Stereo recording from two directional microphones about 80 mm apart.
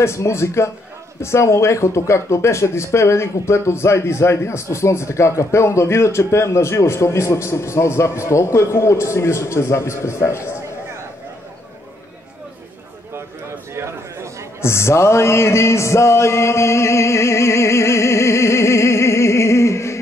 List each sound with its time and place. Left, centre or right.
0.0 s speech: left
13.1 s a sound: right
14.6 s music: left